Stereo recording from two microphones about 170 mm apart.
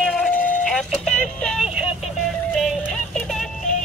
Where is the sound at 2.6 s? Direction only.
Centre (ahead or behind).